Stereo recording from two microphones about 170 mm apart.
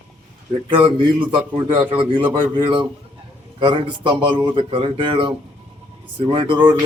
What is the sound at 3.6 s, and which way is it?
Speech, 25° right (ahead or behind).